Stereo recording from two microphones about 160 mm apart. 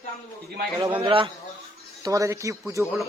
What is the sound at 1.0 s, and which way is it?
Speech, 35° right (ahead or behind).